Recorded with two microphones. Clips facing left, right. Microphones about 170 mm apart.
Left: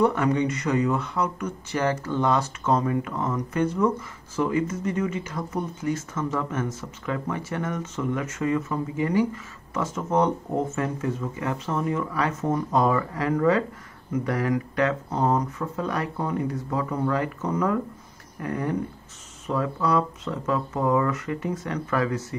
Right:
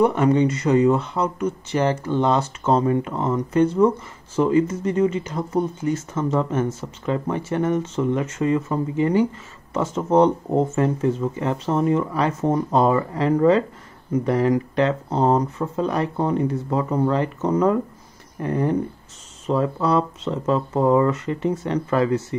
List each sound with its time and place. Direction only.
0.0 s speech: 25° right (ahead or behind)